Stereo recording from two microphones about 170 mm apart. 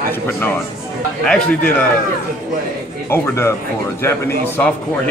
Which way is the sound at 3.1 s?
15° left (ahead or behind).